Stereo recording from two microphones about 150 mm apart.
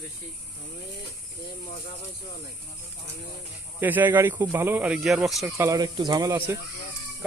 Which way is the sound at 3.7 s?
15° right (ahead or behind).